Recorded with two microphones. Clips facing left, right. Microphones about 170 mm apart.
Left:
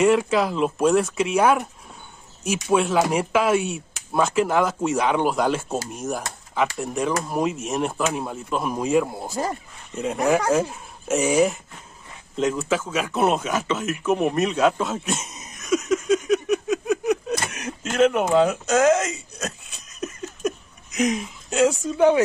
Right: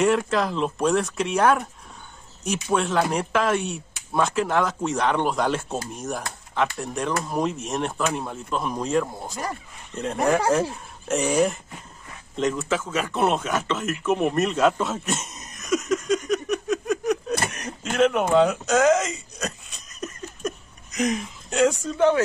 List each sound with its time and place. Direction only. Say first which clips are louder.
0.0 s speech: left 3 dB; 5° left (ahead or behind)
9.3 s speech: left 5 dB; 25° left (ahead or behind)
9.9 s speech: left 1 dB; 5° left (ahead or behind)
17.5 s a sound: left 1 dB; centre (ahead or behind)